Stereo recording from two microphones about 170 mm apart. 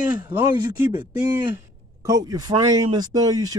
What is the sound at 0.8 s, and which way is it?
Speech, 15° right (ahead or behind).